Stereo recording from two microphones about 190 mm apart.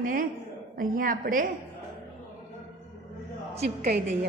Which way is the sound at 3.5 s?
35° right (ahead or behind).